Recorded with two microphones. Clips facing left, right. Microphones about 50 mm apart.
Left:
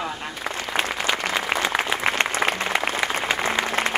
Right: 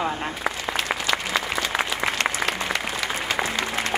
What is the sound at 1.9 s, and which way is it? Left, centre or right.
Applause, left.